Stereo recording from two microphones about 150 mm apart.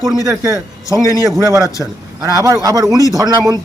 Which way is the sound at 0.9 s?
20° left (ahead or behind).